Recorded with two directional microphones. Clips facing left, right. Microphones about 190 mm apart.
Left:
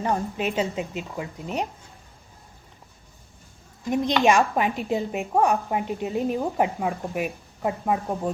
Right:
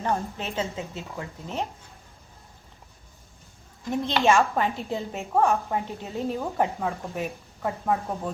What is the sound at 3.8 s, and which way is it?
A woman's voice, 15° left (ahead or behind).